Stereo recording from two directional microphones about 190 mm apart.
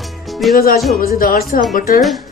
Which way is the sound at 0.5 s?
50° left (ahead or behind).